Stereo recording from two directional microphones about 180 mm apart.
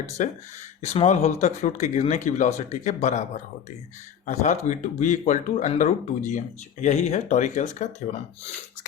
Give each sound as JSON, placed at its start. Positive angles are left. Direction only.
{"t": 0.2, "sound": "speech", "side_deg": 45}
{"t": 4.3, "sound": "speech", "side_deg": 40}